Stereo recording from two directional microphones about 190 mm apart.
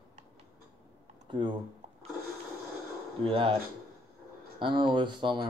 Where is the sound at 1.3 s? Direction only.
25° right (ahead or behind).